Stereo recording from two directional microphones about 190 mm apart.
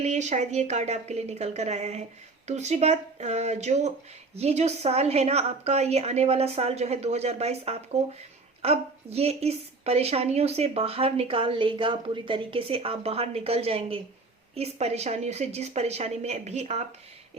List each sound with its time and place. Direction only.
0.0 s a woman's voice: 35° right (ahead or behind)